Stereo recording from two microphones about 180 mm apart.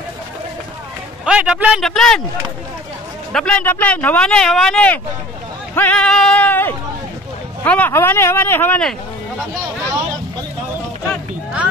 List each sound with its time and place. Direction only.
1.2 s a man's voice: 5° right (ahead or behind)
3.3 s a man's voice: 5° left (ahead or behind)